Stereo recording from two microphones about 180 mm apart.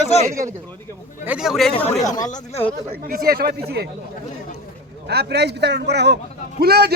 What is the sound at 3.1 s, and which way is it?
Speech, 60° right (ahead or behind).